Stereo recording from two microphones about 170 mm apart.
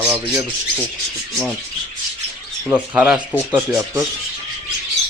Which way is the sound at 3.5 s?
20° right (ahead or behind).